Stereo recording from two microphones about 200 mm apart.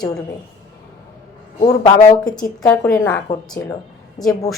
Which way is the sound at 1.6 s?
20° left (ahead or behind).